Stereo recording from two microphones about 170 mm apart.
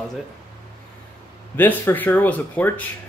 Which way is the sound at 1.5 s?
10° left (ahead or behind).